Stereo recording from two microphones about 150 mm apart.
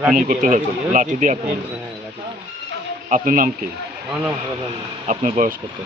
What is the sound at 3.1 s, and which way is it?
Speech, 65° right (ahead or behind).